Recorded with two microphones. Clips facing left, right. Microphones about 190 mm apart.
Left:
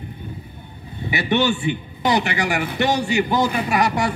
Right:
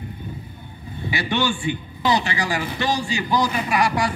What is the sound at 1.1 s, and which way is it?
Speech, 20° left (ahead or behind).